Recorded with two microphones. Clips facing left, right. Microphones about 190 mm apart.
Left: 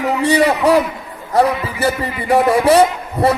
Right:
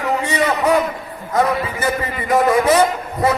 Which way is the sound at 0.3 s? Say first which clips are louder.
Left 5 dB; 35° left (ahead or behind).